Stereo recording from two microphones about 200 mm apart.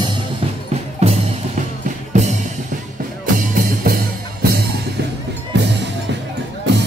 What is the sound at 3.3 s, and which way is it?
Music, 45° right (ahead or behind).